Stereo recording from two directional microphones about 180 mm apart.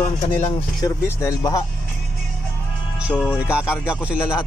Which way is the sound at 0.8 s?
20° left (ahead or behind).